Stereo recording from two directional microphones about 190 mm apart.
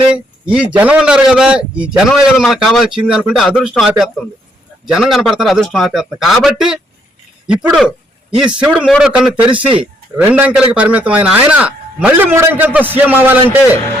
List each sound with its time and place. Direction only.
0.0 s a man's voice: 5° right (ahead or behind)
9.5 s speech: 25° right (ahead or behind)
10.2 s a man's voice: 10° right (ahead or behind)